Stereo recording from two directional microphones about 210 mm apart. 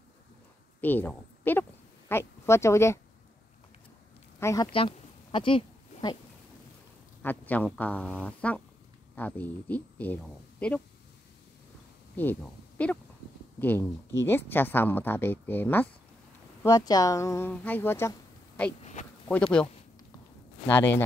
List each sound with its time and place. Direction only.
0.7 s a sound: 10° left (ahead or behind)
4.4 s speech: 15° left (ahead or behind)
4.7 s a sound: 25° left (ahead or behind)
7.2 s a woman's voice: 10° left (ahead or behind)
12.2 s a woman's voice: 10° left (ahead or behind)
19.2 s a woman's voice: 5° left (ahead or behind)